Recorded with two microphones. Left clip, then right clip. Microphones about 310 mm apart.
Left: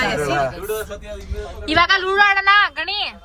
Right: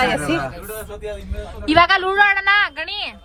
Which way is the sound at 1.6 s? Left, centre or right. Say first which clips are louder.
Right 2 dB; centre.